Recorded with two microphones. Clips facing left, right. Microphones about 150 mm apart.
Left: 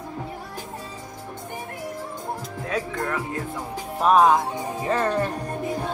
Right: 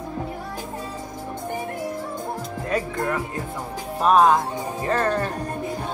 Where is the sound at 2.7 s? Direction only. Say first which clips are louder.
Right 2 dB; 5° right (ahead or behind).